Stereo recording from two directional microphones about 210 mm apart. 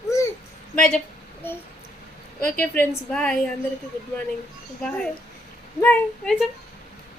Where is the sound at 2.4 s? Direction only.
10° left (ahead or behind).